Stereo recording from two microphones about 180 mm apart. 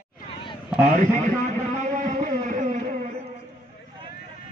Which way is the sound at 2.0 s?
45° right (ahead or behind).